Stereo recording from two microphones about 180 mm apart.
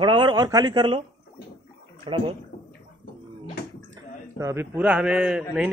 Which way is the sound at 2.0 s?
30° right (ahead or behind).